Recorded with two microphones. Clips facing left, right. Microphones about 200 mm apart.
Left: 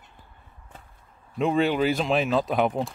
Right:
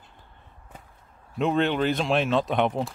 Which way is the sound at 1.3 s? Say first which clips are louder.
Left 1 dB; centre (ahead or behind).